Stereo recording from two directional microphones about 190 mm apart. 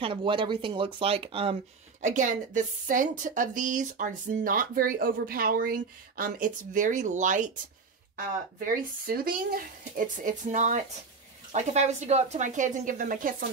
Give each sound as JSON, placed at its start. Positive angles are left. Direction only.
{"t": 0.0, "sound": "speech", "side_deg": -25}